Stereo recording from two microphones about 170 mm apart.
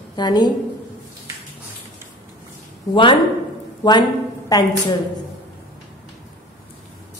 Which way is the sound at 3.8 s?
25° left (ahead or behind).